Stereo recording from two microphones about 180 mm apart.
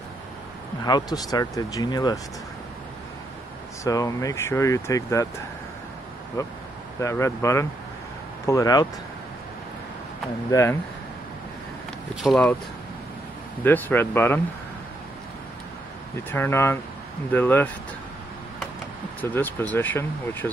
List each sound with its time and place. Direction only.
0.8 s speech: 20° left (ahead or behind)
3.8 s speech: 20° left (ahead or behind)
6.4 s speech: 15° left (ahead or behind)
10.5 s speech: 15° left (ahead or behind)
12.2 s speech: centre (ahead or behind)
13.7 s speech: 10° left (ahead or behind)
16.3 s speech: 10° left (ahead or behind)
19.2 s speech: 10° left (ahead or behind)